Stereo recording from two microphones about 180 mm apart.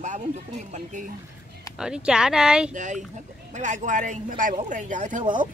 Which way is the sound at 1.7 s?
5° right (ahead or behind).